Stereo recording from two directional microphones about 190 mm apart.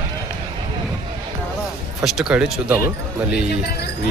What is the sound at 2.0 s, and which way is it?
Speech, centre (ahead or behind).